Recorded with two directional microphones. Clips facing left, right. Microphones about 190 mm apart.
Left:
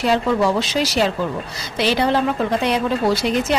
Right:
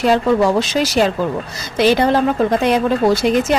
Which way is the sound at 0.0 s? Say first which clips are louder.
Right 4 dB; 45° right (ahead or behind).